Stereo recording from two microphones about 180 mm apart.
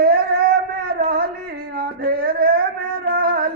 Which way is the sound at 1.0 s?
60° right (ahead or behind).